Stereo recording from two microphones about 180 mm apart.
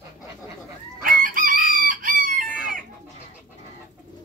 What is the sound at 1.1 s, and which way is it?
Chicken, 50° right (ahead or behind).